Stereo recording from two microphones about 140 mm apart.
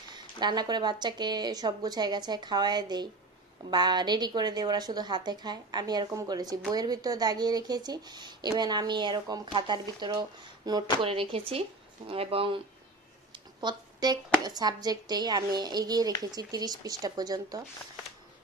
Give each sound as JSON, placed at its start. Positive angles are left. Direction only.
{"t": 0.1, "sound": "speech", "side_deg": -30}
{"t": 11.0, "sound": "speech", "side_deg": -40}
{"t": 13.3, "sound": "speech", "side_deg": -30}